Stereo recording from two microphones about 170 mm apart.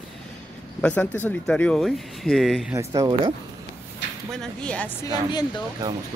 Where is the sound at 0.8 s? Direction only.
10° left (ahead or behind).